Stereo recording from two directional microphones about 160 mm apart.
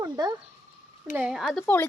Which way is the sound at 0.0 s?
25° right (ahead or behind).